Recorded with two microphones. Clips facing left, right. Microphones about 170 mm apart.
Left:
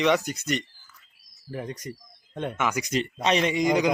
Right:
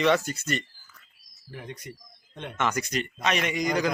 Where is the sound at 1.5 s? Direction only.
40° left (ahead or behind).